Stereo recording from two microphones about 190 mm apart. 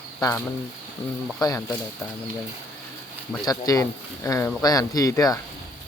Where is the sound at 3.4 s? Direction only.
20° left (ahead or behind).